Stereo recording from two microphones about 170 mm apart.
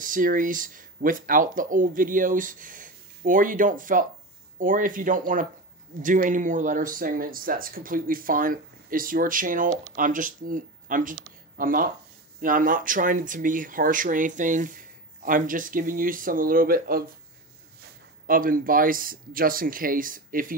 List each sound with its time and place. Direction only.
0.0 s speech: 55° right (ahead or behind)
18.2 s speech: 55° right (ahead or behind)